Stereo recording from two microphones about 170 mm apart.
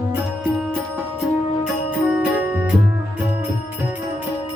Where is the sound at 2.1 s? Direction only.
5° right (ahead or behind).